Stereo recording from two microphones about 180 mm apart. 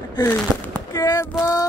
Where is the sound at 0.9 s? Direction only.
20° left (ahead or behind).